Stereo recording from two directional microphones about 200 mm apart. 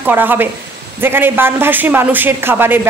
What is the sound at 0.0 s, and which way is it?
A man's voice, 10° right (ahead or behind).